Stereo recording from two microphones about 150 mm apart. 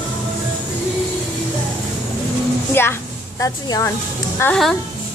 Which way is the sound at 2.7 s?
15° left (ahead or behind).